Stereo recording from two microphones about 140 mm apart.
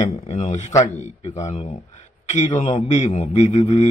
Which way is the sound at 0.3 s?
55° left (ahead or behind).